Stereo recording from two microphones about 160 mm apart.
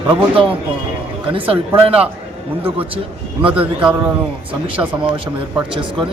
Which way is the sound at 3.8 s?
10° right (ahead or behind).